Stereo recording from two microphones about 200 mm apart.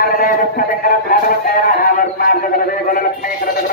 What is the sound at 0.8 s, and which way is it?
Music, 45° left (ahead or behind).